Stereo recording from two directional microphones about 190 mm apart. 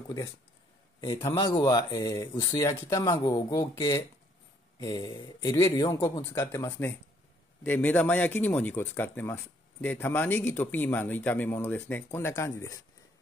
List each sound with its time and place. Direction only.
1.0 s speech: 30° left (ahead or behind)